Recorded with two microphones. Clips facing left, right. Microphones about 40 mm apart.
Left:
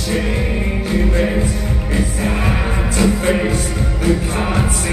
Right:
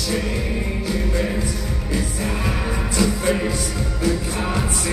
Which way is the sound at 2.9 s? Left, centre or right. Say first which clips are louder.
Left 4 dB; left.